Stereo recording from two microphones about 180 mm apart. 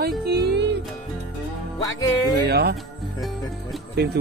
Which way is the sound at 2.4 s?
65° right (ahead or behind).